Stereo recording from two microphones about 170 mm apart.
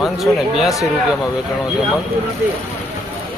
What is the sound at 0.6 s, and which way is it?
Speech, centre (ahead or behind).